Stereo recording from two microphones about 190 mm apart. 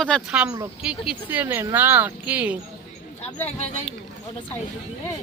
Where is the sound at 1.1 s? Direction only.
10° right (ahead or behind).